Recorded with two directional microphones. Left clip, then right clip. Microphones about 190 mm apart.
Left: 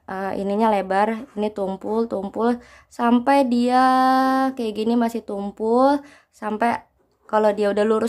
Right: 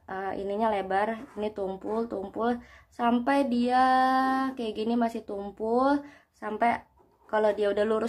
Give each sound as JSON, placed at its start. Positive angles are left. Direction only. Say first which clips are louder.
{"t": 0.0, "sound": "a woman's voice", "louder": "left 7 dB", "side_deg": 40}